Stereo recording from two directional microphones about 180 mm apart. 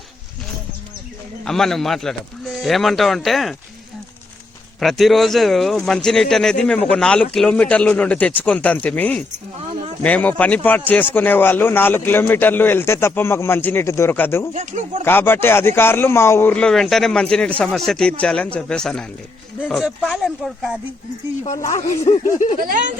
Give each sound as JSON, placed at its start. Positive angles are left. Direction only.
{"t": 1.5, "sound": "speech", "side_deg": 0}
{"t": 4.8, "sound": "a man's voice", "side_deg": 0}
{"t": 14.5, "sound": "speech", "side_deg": -45}
{"t": 15.0, "sound": "speech", "side_deg": 10}
{"t": 22.0, "sound": "a sound", "side_deg": 40}
{"t": 22.6, "sound": "speech", "side_deg": -45}